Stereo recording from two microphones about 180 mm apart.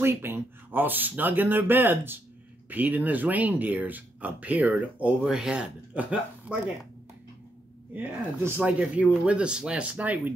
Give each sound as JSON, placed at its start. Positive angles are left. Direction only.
{"t": 0.0, "sound": "speech", "side_deg": -15}
{"t": 7.9, "sound": "speech", "side_deg": -10}